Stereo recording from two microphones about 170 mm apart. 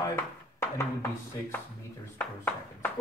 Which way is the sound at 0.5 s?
15° left (ahead or behind).